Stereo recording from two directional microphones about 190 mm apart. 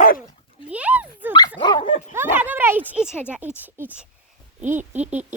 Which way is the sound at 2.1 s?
10° right (ahead or behind).